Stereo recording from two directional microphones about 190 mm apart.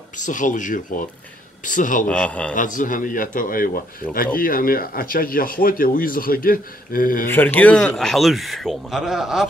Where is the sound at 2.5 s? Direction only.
45° left (ahead or behind).